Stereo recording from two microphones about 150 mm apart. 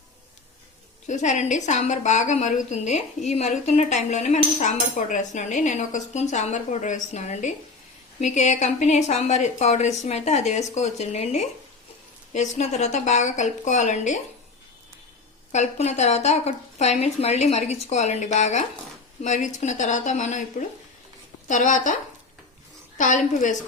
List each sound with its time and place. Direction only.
1.0 s a woman's voice: 55° left (ahead or behind)
15.5 s a woman's voice: 50° left (ahead or behind)
23.0 s a woman's voice: 55° left (ahead or behind)